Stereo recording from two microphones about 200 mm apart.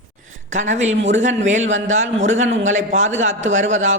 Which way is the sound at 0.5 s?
35° right (ahead or behind).